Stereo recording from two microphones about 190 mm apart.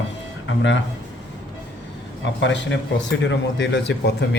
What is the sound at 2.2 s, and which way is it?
Speech, 75° left (ahead or behind).